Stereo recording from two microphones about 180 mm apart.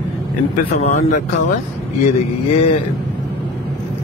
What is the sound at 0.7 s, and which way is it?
Speech, 35° left (ahead or behind).